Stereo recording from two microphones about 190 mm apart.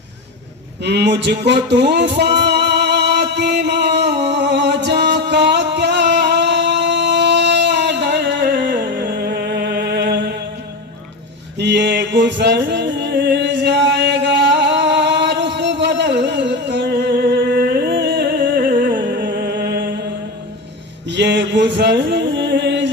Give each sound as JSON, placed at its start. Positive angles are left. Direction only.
{"t": 0.8, "sound": "music", "side_deg": -65}
{"t": 11.5, "sound": "music", "side_deg": -65}
{"t": 17.9, "sound": "a sound", "side_deg": -60}
{"t": 19.2, "sound": "music", "side_deg": -55}
{"t": 21.1, "sound": "music", "side_deg": -65}